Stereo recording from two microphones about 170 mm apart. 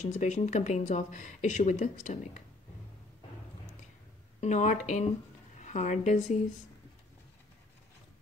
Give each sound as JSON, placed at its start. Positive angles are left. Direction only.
{"t": 0.0, "sound": "speech", "side_deg": 40}
{"t": 4.4, "sound": "a woman's voice", "side_deg": 45}